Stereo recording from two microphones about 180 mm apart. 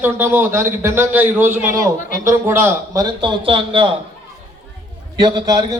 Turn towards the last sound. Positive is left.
turn(degrees=-20)  # may be behind; listen again after turning